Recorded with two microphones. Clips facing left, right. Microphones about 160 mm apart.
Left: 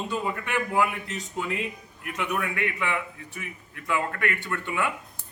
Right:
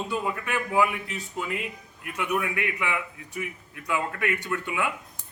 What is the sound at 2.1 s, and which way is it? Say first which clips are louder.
A man's voice: right 2 dB; 10° right (ahead or behind).